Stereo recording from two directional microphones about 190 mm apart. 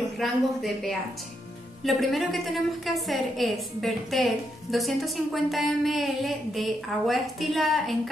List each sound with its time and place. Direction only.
0.2 s a woman's voice: centre (ahead or behind)